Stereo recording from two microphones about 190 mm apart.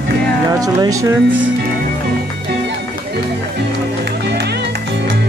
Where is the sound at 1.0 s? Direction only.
90° right.